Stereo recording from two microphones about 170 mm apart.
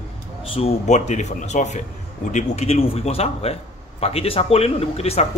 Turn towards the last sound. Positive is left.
turn(degrees=35)  # may be behind; listen again after turning